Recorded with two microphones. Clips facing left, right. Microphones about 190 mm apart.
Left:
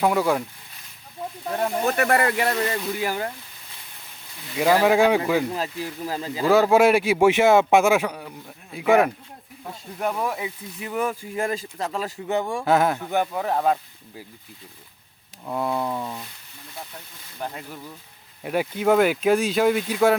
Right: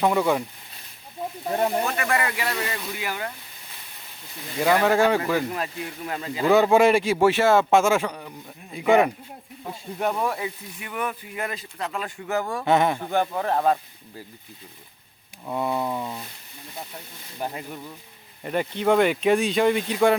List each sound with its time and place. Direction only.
0.0 s speech: centre (ahead or behind)
1.5 s speech: 5° right (ahead or behind)
1.9 s speech: 45° left (ahead or behind)
4.5 s speech: 5° left (ahead or behind)
5.5 s speech: 30° left (ahead or behind)
6.4 s speech: centre (ahead or behind)
10.2 s speech: 10° left (ahead or behind)
10.8 s speech: 30° left (ahead or behind)
12.6 s speech: centre (ahead or behind)
15.4 s speech: centre (ahead or behind)
17.3 s speech: 10° right (ahead or behind)
18.4 s speech: 5° left (ahead or behind)